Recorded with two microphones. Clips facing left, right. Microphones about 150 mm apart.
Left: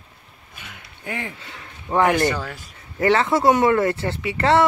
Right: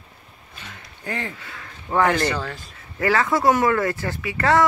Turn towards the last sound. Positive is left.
turn(degrees=25)  # may be behind; listen again after turning